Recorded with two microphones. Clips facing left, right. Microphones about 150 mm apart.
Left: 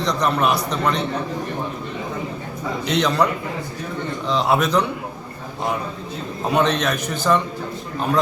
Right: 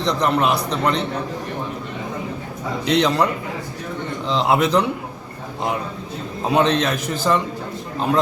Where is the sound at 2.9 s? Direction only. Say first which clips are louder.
Right 2 dB; 25° right (ahead or behind).